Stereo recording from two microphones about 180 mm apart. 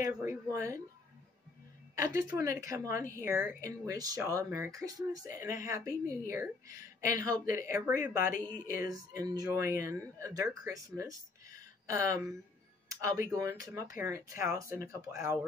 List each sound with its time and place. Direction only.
0.1 s speech: 10° right (ahead or behind)
2.0 s speech: 15° right (ahead or behind)
8.4 s speech: 10° left (ahead or behind)
8.7 s speech: 20° right (ahead or behind)
13.3 s speech: 15° right (ahead or behind)